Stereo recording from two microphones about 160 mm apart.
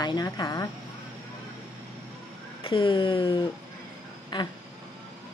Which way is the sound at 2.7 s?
30° left (ahead or behind).